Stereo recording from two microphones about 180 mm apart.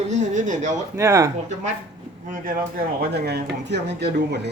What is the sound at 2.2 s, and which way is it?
Speech, 50° right (ahead or behind).